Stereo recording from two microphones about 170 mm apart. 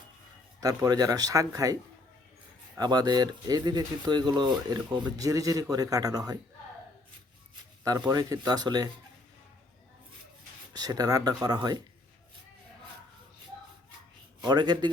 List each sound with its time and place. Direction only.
0.6 s speech: 20° right (ahead or behind)
7.9 s speech: 20° right (ahead or behind)
10.8 s speech: 20° right (ahead or behind)
14.4 s speech: 25° right (ahead or behind)